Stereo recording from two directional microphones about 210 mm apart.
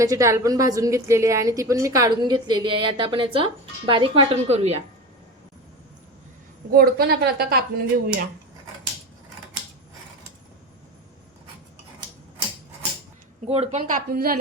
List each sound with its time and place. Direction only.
0.0 s a woman's voice: 15° right (ahead or behind); by 4.8 s 30° right (ahead or behind)
6.7 s a woman's voice: 45° right (ahead or behind)
13.5 s speech: 30° right (ahead or behind)